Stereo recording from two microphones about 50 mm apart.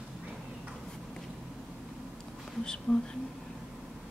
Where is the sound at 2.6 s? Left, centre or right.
Centre.